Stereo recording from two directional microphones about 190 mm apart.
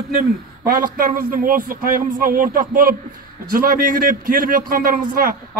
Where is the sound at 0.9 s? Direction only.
50° right (ahead or behind).